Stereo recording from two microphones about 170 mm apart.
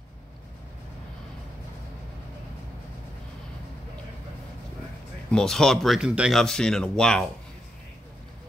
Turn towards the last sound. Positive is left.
turn(degrees=5)  # may be behind; listen again after turning